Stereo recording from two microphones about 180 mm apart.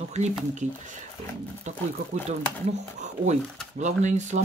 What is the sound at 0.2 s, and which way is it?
Speech, 40° right (ahead or behind).